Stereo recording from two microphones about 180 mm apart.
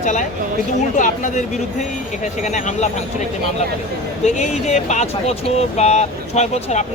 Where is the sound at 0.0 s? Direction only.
45° left (ahead or behind).